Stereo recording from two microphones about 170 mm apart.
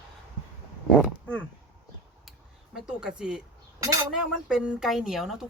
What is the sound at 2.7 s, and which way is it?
Speech, 5° right (ahead or behind).